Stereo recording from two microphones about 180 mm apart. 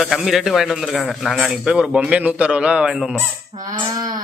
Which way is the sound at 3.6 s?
20° right (ahead or behind).